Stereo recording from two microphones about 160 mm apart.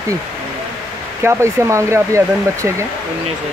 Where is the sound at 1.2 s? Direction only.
15° right (ahead or behind).